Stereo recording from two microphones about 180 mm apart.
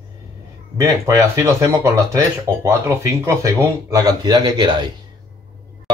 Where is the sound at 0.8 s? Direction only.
15° right (ahead or behind).